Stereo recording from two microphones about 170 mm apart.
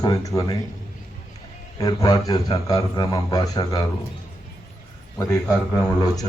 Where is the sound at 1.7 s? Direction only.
25° left (ahead or behind).